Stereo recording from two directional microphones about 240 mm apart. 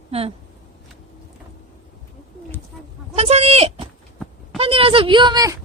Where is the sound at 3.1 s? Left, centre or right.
Right.